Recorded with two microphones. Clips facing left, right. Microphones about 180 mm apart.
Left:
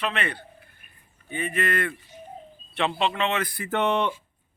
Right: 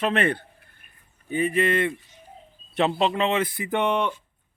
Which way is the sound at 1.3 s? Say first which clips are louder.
Right 5 dB; 35° right (ahead or behind).